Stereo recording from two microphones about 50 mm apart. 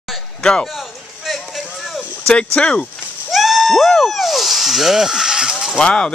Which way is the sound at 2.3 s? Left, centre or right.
Centre.